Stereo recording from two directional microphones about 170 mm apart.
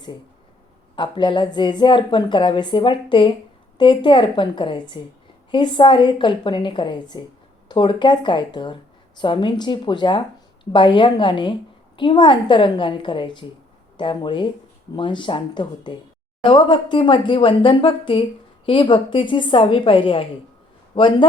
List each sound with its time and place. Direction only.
0.9 s a woman's voice: 25° left (ahead or behind)